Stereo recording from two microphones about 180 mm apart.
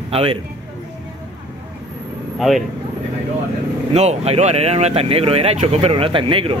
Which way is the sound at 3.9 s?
35° right (ahead or behind).